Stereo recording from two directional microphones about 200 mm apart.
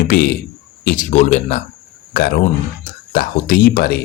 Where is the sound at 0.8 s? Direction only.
40° left (ahead or behind).